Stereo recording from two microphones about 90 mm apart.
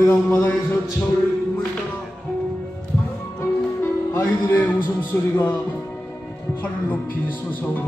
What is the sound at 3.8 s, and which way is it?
Music, 30° left (ahead or behind).